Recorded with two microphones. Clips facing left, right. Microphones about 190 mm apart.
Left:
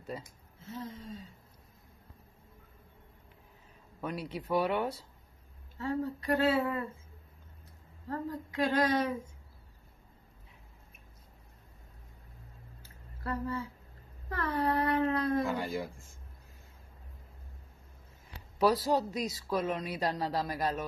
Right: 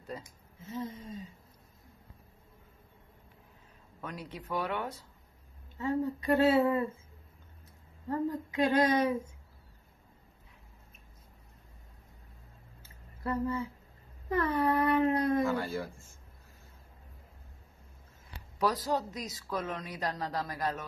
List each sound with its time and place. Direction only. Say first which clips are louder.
0.2 s speech: right 1 dB; 15° right (ahead or behind)
4.0 s speech: left 5 dB; 10° left (ahead or behind)
5.8 s speech: right 2 dB; 20° right (ahead or behind)
8.1 s speech: right 4 dB; 20° right (ahead or behind)
12.8 s a sound: right 3 dB; 20° right (ahead or behind)
14.3 s dog: right 3 dB; 15° right (ahead or behind)
15.4 s speech: right 2 dB; 15° left (ahead or behind)
18.7 s speech: left 4 dB; 10° left (ahead or behind)